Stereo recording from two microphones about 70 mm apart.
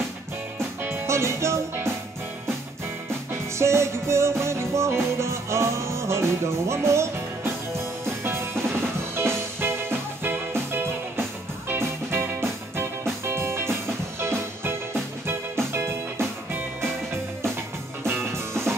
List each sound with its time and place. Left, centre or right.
0.8 s music: right
3.5 s music: right
18.0 s music: right